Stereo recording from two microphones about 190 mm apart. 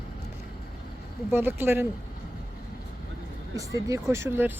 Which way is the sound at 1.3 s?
10° right (ahead or behind).